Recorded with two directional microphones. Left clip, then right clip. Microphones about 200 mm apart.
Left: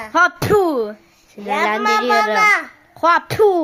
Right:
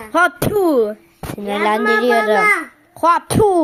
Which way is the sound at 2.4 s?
45° left (ahead or behind).